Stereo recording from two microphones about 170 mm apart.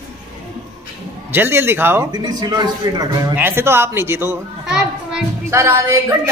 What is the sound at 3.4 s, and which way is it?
A woman's voice, 15° right (ahead or behind).